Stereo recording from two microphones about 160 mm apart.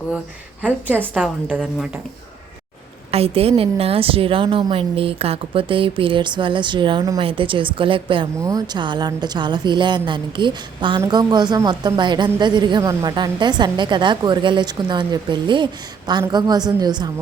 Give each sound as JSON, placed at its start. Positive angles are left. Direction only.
{"t": 0.6, "sound": "a woman's voice", "side_deg": -10}
{"t": 3.1, "sound": "a woman's voice", "side_deg": -40}